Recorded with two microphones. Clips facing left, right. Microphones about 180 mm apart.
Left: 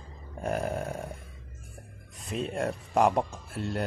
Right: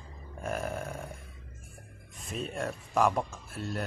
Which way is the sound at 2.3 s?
30° left (ahead or behind).